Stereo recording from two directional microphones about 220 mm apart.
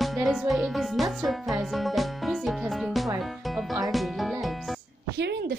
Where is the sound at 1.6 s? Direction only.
Centre (ahead or behind).